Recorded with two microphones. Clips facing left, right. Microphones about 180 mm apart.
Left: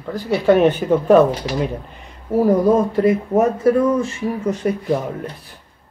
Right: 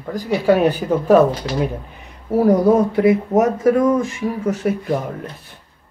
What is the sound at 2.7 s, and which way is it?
Speech, 70° right (ahead or behind).